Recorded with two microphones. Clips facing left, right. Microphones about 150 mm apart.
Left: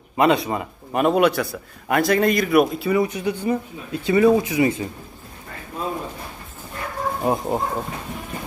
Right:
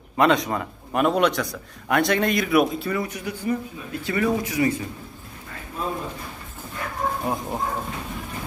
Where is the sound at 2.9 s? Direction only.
20° left (ahead or behind).